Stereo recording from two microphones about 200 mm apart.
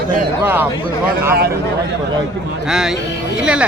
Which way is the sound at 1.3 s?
50° right (ahead or behind).